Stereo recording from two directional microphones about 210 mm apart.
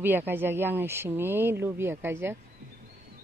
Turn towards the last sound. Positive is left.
turn(degrees=-10)  # may be behind; listen again after turning